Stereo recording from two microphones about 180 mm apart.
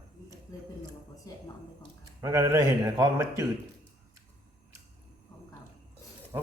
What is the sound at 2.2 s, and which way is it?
A man's voice, 15° right (ahead or behind).